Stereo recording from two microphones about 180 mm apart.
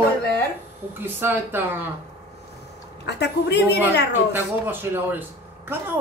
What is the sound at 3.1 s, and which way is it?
Speech, 70° left (ahead or behind).